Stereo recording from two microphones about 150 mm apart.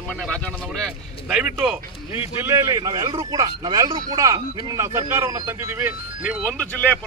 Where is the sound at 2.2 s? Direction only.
15° right (ahead or behind).